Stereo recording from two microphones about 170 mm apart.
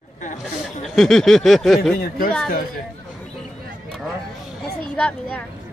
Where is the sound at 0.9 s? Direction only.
Centre (ahead or behind).